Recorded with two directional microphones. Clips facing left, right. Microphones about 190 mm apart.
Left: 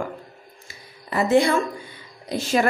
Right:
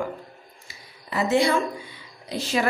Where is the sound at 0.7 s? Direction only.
50° left (ahead or behind).